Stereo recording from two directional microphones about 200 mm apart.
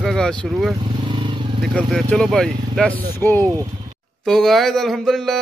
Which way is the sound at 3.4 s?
15° right (ahead or behind).